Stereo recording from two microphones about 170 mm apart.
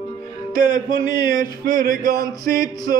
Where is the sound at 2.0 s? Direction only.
20° left (ahead or behind).